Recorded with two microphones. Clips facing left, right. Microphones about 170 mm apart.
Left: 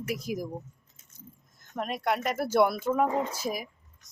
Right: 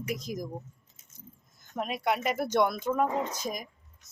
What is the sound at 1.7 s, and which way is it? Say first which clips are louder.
Speech: even; centre (ahead or behind).